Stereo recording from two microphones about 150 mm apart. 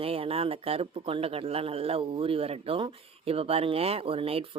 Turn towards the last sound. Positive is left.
turn(degrees=-40)  # may be behind; listen again after turning